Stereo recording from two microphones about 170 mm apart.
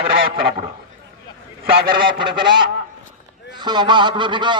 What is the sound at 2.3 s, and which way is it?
A man's voice, 30° right (ahead or behind).